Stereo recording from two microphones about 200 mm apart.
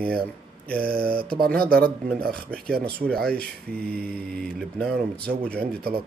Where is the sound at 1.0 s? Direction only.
45° right (ahead or behind).